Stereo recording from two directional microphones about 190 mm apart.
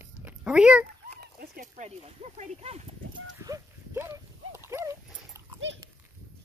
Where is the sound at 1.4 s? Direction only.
45° right (ahead or behind).